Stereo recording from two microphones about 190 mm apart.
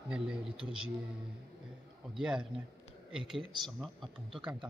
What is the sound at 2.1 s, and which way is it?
Speech, 5° right (ahead or behind).